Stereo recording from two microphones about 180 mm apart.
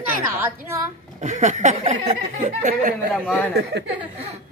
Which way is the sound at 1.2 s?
40° right (ahead or behind).